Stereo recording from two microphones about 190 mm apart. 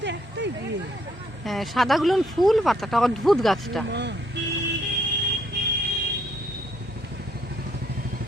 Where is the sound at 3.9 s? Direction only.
65° right (ahead or behind).